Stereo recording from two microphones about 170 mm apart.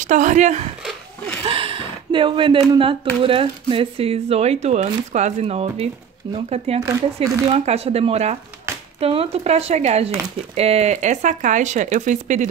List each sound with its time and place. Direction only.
0.0 s speech: 50° right (ahead or behind)
1.4 s speech: 30° right (ahead or behind)
8.7 s a sound: 15° right (ahead or behind)
9.0 s speech: 35° right (ahead or behind)